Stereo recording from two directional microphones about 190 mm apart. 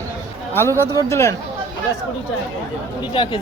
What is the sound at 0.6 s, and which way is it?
Speech, 10° left (ahead or behind).